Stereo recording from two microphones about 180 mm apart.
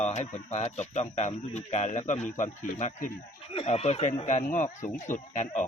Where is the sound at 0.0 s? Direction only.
40° left (ahead or behind).